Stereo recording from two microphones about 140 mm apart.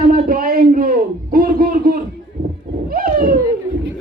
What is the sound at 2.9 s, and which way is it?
Wild animals, 90° right.